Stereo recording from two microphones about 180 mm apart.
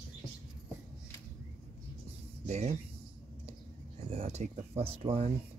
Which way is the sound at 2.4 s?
40° right (ahead or behind).